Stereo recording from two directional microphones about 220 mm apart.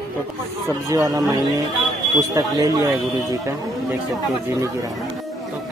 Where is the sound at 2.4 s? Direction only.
15° right (ahead or behind).